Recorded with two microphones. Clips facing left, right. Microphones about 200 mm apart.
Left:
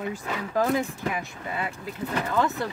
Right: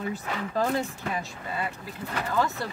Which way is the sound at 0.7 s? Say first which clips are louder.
Left 2 dB; 15° left (ahead or behind).